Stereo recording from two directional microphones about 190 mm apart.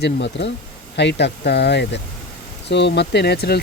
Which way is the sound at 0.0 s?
65° left (ahead or behind).